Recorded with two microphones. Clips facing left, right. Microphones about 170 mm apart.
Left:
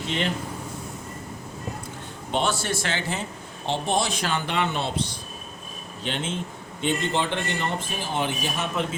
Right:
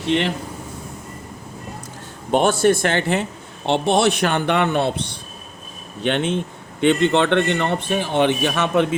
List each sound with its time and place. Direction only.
0.0 s speech: 70° right (ahead or behind)
2.3 s a man's voice: 50° right (ahead or behind); by 9.0 s 70° right (ahead or behind)